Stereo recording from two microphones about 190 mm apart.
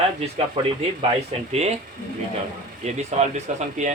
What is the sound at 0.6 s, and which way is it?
A man's voice, 30° right (ahead or behind).